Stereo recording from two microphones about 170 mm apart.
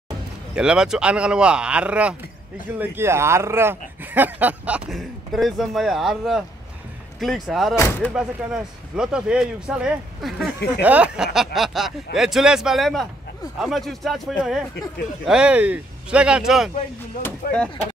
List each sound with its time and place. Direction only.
0.6 s speech: 5° right (ahead or behind)
7.7 s speech: 15° left (ahead or behind)
8.1 s speech: 5° right (ahead or behind)
15.2 s speech: 5° right (ahead or behind)
17.4 s speech: 60° left (ahead or behind)